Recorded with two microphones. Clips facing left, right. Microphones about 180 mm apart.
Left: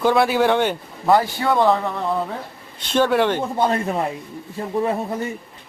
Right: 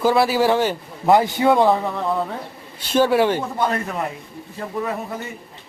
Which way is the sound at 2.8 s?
10° right (ahead or behind).